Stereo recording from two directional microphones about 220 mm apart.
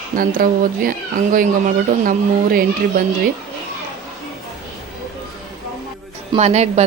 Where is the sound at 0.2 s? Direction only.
40° right (ahead or behind).